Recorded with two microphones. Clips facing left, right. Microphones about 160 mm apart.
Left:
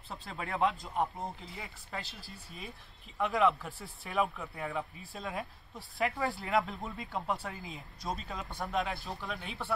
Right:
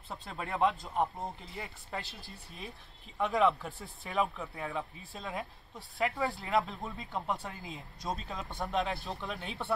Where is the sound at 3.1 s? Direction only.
Centre (ahead or behind).